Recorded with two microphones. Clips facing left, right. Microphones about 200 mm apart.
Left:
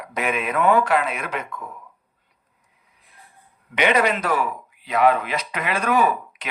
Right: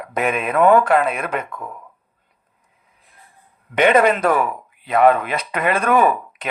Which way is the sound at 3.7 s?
50° right (ahead or behind).